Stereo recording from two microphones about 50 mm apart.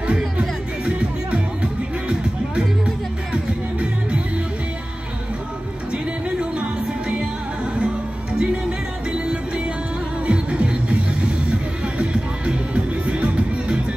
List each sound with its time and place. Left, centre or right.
0.4 s music: right
7.7 s music: centre